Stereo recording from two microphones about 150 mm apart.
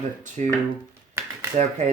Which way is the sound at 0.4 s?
50° right (ahead or behind).